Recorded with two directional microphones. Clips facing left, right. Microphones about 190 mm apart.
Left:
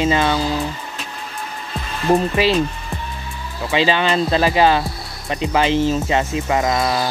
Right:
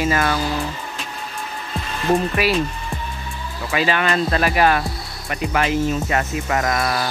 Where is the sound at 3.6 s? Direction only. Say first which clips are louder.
Left 3 dB; 25° left (ahead or behind).